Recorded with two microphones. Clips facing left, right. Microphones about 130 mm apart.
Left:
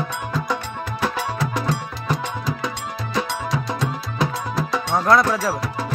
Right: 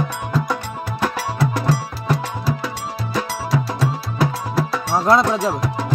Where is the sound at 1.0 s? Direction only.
5° right (ahead or behind).